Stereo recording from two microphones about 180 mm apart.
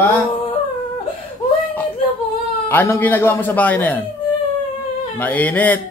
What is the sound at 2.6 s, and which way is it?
A man's voice, 10° left (ahead or behind).